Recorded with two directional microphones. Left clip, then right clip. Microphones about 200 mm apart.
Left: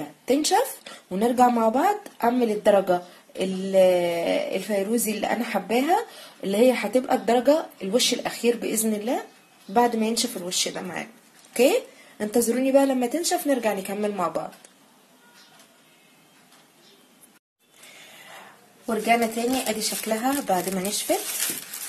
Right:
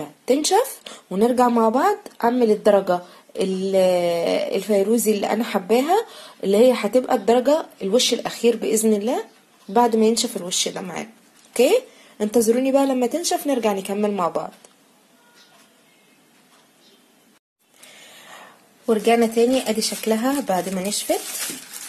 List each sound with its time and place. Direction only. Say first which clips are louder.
0.0 s speech: right 3 dB; 35° right (ahead or behind)
12.2 s speech: right 5 dB; 30° right (ahead or behind)
18.9 s speech: right 4 dB; 45° right (ahead or behind)